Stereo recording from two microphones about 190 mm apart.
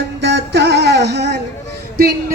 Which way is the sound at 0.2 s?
65° right (ahead or behind).